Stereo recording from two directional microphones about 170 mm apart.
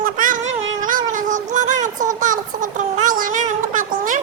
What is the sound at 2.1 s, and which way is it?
Child singing, 50° right (ahead or behind).